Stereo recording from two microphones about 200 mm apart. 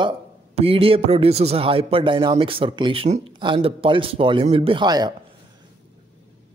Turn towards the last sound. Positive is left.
turn(degrees=-20)  # may be behind; listen again after turning